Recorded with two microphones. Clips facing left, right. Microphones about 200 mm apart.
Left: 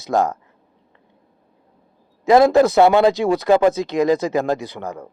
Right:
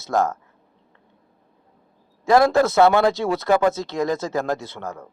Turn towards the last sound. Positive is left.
turn(degrees=15)  # may be behind; listen again after turning